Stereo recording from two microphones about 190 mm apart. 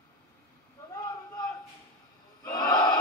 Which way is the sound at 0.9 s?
20° left (ahead or behind).